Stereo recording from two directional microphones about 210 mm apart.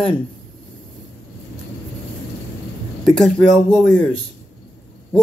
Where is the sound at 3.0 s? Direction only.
5° left (ahead or behind).